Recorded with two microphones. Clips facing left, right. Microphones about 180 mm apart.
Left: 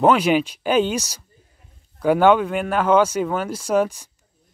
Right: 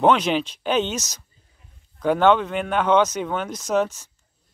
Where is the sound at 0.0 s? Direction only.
10° left (ahead or behind).